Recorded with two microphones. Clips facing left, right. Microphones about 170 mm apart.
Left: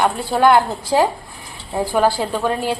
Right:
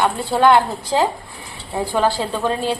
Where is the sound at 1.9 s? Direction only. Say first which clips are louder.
Left 2 dB; 10° left (ahead or behind).